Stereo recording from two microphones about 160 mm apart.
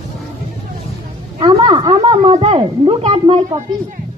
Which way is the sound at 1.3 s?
30° right (ahead or behind).